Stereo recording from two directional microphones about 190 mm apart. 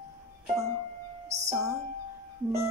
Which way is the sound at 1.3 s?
15° right (ahead or behind).